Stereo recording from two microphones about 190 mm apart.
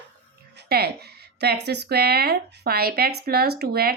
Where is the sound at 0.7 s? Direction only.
55° right (ahead or behind).